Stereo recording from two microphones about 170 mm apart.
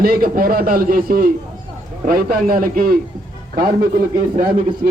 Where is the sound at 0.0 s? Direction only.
60° right (ahead or behind).